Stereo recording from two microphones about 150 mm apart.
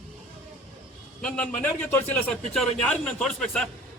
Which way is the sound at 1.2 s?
5° left (ahead or behind).